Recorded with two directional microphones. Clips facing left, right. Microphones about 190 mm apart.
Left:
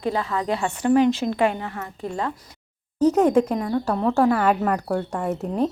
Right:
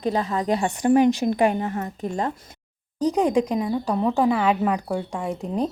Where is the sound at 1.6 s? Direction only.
40° right (ahead or behind).